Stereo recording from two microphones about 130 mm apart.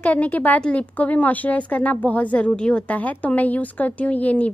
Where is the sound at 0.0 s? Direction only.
10° left (ahead or behind).